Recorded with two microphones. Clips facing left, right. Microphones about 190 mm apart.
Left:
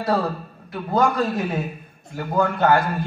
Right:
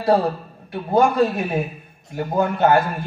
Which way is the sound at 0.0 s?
30° right (ahead or behind).